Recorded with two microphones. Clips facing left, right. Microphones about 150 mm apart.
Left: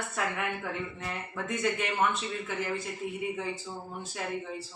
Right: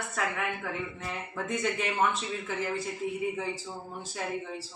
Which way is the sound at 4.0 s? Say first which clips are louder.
Right 1 dB; centre (ahead or behind).